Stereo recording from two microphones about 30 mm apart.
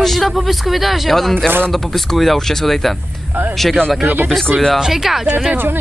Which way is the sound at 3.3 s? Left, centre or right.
Right.